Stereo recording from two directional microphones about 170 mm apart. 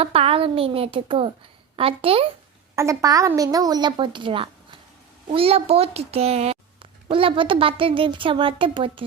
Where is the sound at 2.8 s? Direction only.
20° right (ahead or behind).